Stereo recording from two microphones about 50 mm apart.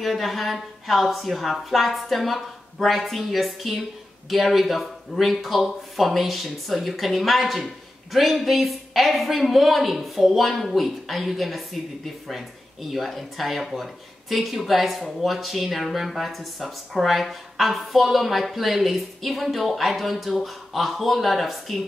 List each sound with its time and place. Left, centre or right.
0.0 s speech: centre
12.9 s speech: centre